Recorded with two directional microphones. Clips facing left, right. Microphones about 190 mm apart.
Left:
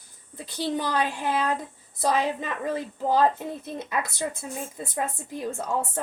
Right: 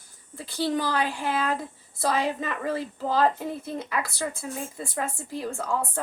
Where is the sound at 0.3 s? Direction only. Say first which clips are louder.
Right 2 dB; 20° left (ahead or behind).